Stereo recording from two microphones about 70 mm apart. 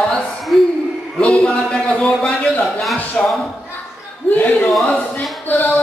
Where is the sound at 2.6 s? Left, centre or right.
Centre.